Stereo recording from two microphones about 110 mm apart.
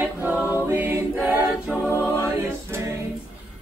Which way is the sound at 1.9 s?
25° left (ahead or behind).